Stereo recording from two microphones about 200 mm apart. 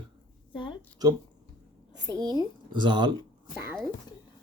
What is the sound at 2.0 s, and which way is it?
Speech, 20° right (ahead or behind).